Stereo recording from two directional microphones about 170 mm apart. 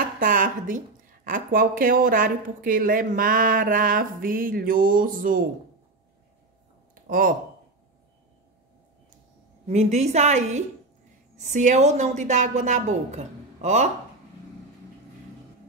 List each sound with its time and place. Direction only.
0.2 s a woman's voice: 50° right (ahead or behind)
7.1 s speech: 55° right (ahead or behind)
9.7 s a woman's voice: 40° right (ahead or behind)